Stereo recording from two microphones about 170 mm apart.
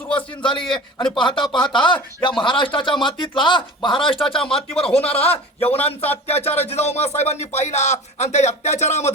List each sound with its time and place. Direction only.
0.2 s speech: 30° left (ahead or behind)